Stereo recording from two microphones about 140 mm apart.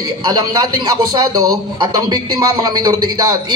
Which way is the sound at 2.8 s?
30° right (ahead or behind).